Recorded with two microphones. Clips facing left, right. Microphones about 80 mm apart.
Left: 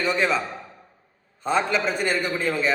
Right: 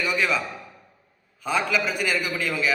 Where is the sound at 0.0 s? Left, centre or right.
Left.